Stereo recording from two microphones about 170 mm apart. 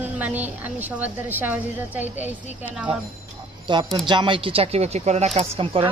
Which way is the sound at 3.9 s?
25° right (ahead or behind).